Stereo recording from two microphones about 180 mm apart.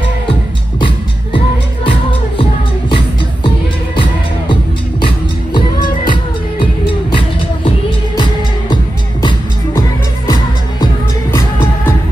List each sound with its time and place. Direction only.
5.0 s music: 25° left (ahead or behind)